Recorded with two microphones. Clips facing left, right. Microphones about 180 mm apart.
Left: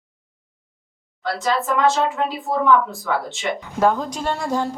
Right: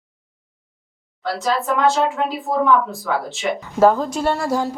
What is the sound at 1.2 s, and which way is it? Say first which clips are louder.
Speech: right 1 dB; centre (ahead or behind).